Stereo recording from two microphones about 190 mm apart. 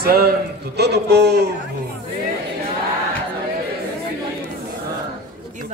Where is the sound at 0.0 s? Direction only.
55° right (ahead or behind).